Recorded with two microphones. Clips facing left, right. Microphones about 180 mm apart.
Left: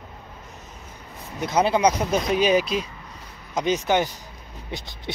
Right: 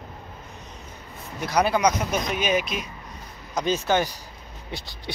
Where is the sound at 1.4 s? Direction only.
25° left (ahead or behind).